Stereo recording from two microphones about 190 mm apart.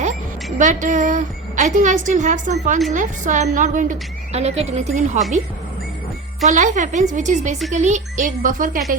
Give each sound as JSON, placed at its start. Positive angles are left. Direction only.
{"t": 0.6, "sound": "a woman's voice", "side_deg": -40}
{"t": 6.4, "sound": "a woman's voice", "side_deg": -40}